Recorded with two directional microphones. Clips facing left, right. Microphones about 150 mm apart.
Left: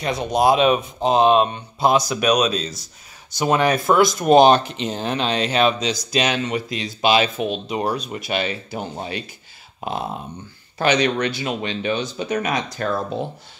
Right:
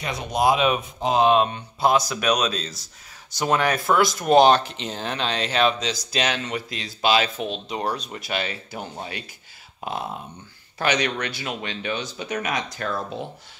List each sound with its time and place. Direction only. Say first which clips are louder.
0.0 s speech: left 4 dB; 35° left (ahead or behind)
9.8 s a sound: left 3 dB; 25° left (ahead or behind)
10.8 s speech: left 5 dB; 25° left (ahead or behind)